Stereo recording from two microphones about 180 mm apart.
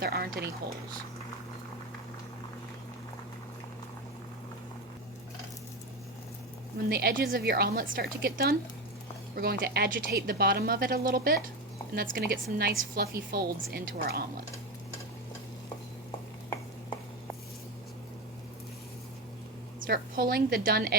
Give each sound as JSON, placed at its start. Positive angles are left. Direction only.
{"t": 0.0, "sound": "a woman's voice", "side_deg": -60}
{"t": 6.8, "sound": "a woman's voice", "side_deg": -60}
{"t": 19.9, "sound": "a woman's voice", "side_deg": -55}